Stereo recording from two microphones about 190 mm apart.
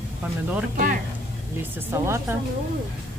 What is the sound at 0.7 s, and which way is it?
Speech, 45° right (ahead or behind).